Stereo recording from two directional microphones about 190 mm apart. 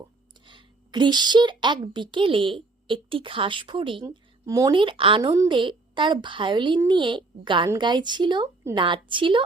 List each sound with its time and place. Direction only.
0.4 s a woman's voice: 25° right (ahead or behind)